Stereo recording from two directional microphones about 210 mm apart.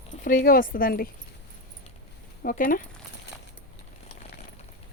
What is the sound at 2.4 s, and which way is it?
Speech, 40° left (ahead or behind).